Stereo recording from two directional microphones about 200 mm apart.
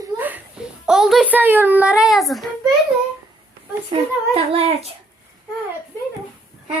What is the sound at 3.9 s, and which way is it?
Speech, 25° right (ahead or behind).